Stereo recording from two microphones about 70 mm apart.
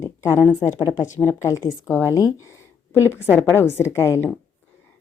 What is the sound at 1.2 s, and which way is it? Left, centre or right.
Speech, left.